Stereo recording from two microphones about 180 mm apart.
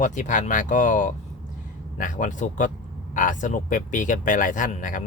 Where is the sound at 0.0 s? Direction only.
45° left (ahead or behind).